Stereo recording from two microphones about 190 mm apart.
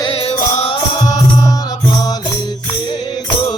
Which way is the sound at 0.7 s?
20° left (ahead or behind).